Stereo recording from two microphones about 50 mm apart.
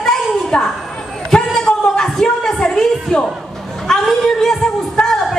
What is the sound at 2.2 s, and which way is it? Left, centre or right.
Music, centre.